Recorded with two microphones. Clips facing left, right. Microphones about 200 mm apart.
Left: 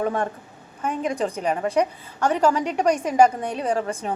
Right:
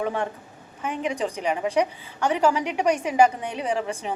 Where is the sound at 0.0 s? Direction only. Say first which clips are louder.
Left 2 dB; 45° left (ahead or behind).